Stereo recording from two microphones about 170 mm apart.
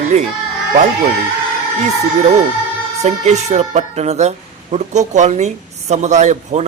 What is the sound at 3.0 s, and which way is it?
A man's voice, 40° right (ahead or behind).